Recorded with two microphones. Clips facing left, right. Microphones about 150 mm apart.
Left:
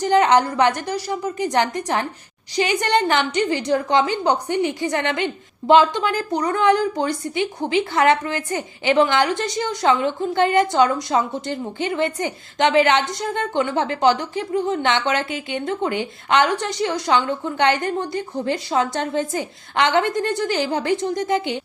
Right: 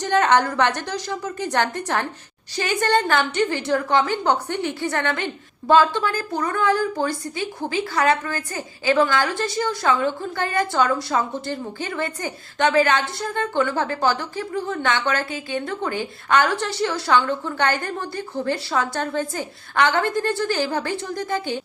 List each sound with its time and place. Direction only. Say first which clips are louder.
0.0 s a woman's voice: left 2 dB; 10° left (ahead or behind)